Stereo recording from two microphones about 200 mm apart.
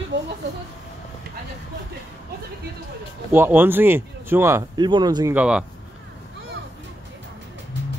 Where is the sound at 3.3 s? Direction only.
10° right (ahead or behind).